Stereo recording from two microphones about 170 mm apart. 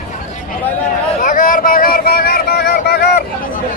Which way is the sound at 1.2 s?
50° left (ahead or behind).